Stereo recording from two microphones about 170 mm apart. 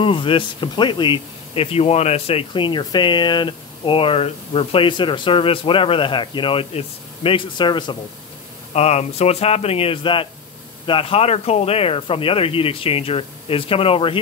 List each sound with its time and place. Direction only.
0.0 s speech: 30° left (ahead or behind)
8.7 s speech: 40° left (ahead or behind)